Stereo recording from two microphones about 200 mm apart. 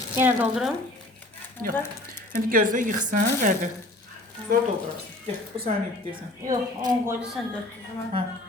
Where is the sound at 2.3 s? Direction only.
45° right (ahead or behind).